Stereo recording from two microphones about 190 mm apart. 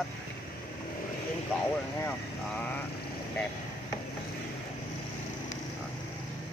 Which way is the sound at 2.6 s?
10° left (ahead or behind).